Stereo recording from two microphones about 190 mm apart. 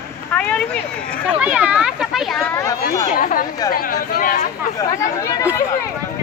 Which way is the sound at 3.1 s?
45° left (ahead or behind).